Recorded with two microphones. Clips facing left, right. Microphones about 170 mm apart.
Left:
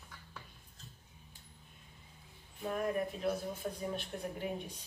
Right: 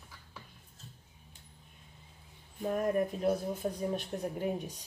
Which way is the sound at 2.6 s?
40° right (ahead or behind).